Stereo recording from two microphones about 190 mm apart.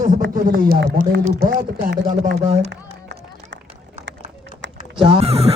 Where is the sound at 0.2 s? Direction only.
50° right (ahead or behind).